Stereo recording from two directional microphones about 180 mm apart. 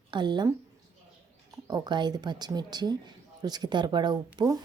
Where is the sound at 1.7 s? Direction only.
20° right (ahead or behind).